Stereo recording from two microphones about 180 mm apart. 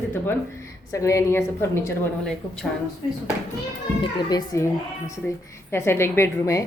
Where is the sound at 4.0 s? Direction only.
20° left (ahead or behind).